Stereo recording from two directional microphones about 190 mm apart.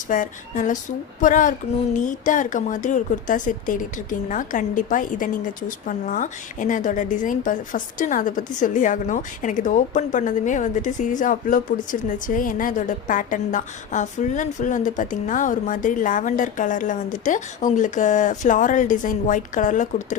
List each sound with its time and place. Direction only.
0.1 s speech: 45° left (ahead or behind)